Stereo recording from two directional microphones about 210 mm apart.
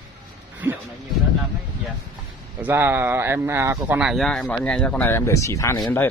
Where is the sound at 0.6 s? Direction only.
10° right (ahead or behind).